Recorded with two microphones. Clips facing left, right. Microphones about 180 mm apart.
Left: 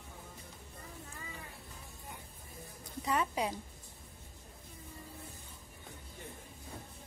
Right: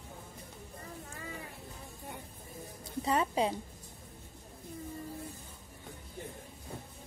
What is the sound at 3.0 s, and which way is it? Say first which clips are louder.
Speech: right 4 dB; 30° right (ahead or behind).